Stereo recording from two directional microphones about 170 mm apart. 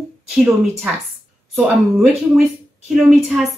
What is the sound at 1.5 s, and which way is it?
Speech, 5° right (ahead or behind).